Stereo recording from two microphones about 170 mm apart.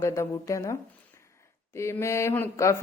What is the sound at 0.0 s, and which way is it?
Speech, 20° left (ahead or behind).